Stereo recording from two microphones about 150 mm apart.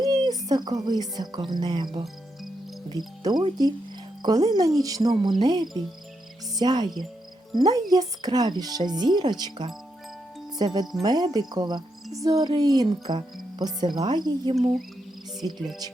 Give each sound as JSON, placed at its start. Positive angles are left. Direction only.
{"t": 0.0, "sound": "speech", "side_deg": -25}
{"t": 3.2, "sound": "speech", "side_deg": -25}